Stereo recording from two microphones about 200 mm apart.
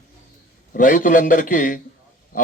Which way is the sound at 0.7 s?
40° left (ahead or behind).